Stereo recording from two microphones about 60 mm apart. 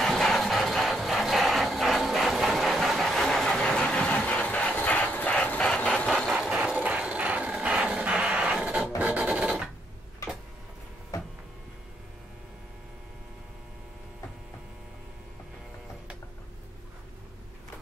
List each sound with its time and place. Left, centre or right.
0.0 s music: centre
6.0 s engine: centre
6.5 s vehicle: centre
9.0 s music: right